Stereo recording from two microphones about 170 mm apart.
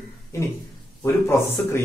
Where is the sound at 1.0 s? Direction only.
15° left (ahead or behind).